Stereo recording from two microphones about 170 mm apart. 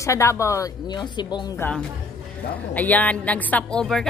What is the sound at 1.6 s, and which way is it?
A woman's voice, 5° left (ahead or behind).